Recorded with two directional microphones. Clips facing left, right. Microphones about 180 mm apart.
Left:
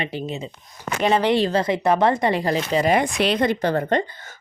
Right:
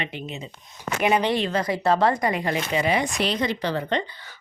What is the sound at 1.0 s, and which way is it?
Speech, 15° right (ahead or behind).